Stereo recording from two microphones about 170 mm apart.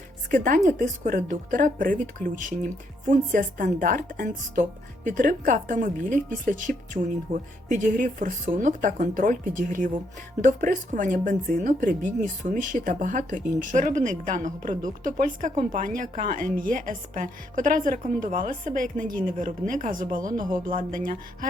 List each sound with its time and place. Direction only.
0.3 s speech: 50° right (ahead or behind)